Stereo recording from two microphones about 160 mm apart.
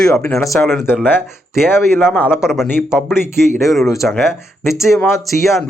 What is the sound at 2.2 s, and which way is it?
Speech, 15° left (ahead or behind).